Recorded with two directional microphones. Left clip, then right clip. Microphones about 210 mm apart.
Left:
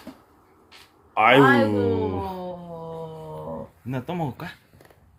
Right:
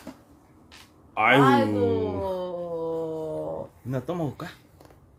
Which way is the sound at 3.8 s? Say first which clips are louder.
Left 1 dB; 10° right (ahead or behind).